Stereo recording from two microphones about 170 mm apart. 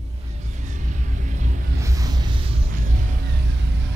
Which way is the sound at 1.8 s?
20° right (ahead or behind).